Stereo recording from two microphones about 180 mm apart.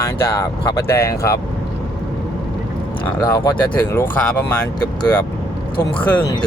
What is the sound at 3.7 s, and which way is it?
Speech, 10° left (ahead or behind).